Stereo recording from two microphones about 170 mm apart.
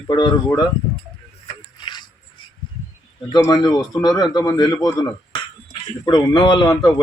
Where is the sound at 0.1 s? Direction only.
25° left (ahead or behind).